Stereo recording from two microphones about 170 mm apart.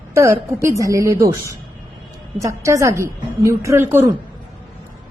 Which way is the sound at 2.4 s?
20° right (ahead or behind).